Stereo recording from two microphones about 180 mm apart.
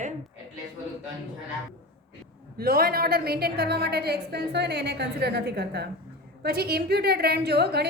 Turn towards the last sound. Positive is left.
turn(degrees=-65)  # may be behind; listen again after turning